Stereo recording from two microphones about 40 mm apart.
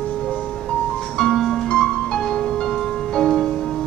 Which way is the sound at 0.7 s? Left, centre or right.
Centre.